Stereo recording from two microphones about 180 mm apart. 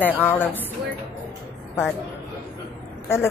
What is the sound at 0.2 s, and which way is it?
Speech, 10° left (ahead or behind).